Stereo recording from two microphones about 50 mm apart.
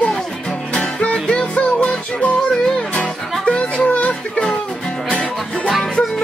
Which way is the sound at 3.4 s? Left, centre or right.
Left.